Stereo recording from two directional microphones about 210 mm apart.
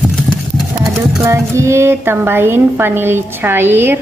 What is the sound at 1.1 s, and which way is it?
A woman's voice, 10° right (ahead or behind).